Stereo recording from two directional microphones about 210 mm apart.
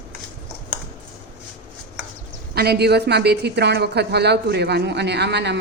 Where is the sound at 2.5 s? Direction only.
50° right (ahead or behind).